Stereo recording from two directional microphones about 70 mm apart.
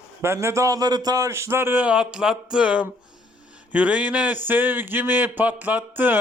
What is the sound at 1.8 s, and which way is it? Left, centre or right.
Speech, centre.